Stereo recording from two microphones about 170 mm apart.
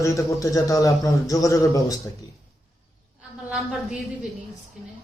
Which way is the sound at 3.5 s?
5° right (ahead or behind).